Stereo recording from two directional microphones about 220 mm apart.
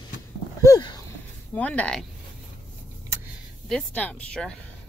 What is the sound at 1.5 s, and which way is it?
Speech, 5° left (ahead or behind).